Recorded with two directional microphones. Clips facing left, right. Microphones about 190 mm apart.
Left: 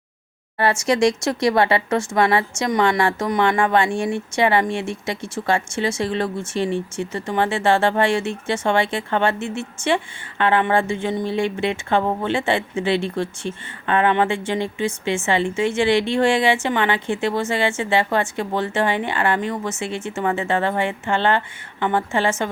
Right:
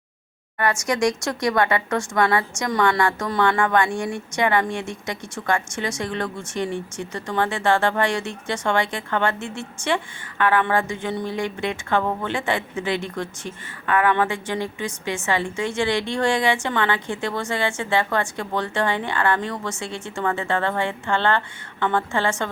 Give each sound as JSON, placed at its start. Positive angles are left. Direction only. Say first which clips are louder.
{"t": 0.9, "sound": "speech", "louder": "left 5 dB", "side_deg": 25}